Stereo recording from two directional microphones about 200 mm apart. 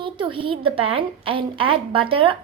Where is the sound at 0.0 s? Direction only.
25° right (ahead or behind).